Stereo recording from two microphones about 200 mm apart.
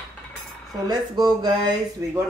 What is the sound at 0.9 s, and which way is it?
Speech, 20° right (ahead or behind).